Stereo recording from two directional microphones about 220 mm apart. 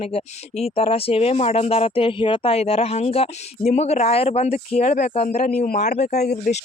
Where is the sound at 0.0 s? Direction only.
30° left (ahead or behind).